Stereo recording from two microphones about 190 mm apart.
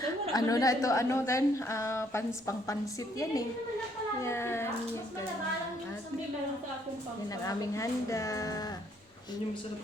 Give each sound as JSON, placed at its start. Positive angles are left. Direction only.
{"t": 0.3, "sound": "a woman's voice", "side_deg": 20}
{"t": 4.2, "sound": "a woman's voice", "side_deg": 15}
{"t": 7.4, "sound": "a woman's voice", "side_deg": 15}